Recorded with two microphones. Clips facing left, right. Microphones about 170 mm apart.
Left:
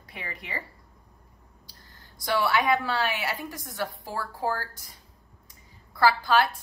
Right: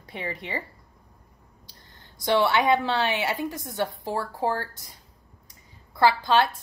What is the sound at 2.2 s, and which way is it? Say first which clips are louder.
A woman's voice: right 3 dB; 25° right (ahead or behind).